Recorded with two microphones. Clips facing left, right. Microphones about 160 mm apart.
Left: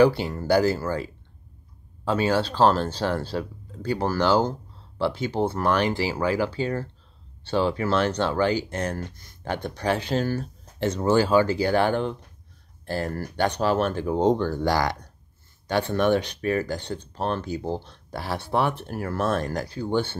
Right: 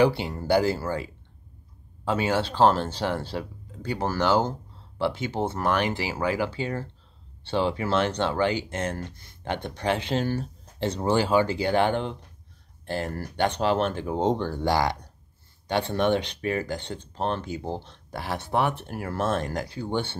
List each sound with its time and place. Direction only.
0.0 s speech: 20° right (ahead or behind)
2.0 s speech: 20° right (ahead or behind)